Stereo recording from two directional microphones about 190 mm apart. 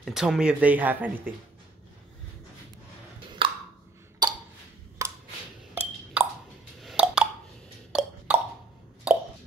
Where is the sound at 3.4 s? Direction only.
30° right (ahead or behind).